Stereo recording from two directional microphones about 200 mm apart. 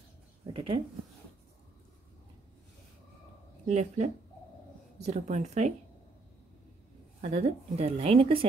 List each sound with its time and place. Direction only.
0.5 s speech: 25° right (ahead or behind)
3.6 s a woman's voice: 35° right (ahead or behind)
7.2 s a woman's voice: 30° right (ahead or behind)